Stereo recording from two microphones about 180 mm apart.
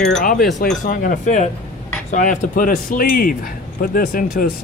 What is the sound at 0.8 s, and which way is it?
Speech, 45° left (ahead or behind).